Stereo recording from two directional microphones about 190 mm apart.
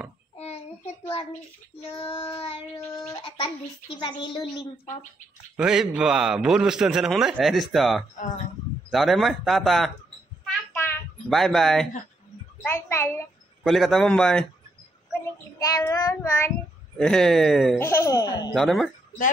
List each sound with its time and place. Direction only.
0.4 s child singing: 35° left (ahead or behind)
1.9 s a child's voice: 25° left (ahead or behind)
5.6 s a man's voice: 5° right (ahead or behind)
10.7 s a sound: 10° left (ahead or behind)
11.2 s a man's voice: centre (ahead or behind)
12.6 s child singing: 10° left (ahead or behind)
13.7 s a man's voice: centre (ahead or behind)
15.6 s child singing: 20° left (ahead or behind)
17.0 s a man's voice: 5° left (ahead or behind)
17.7 s child singing: 15° left (ahead or behind)
18.5 s a man's voice: centre (ahead or behind)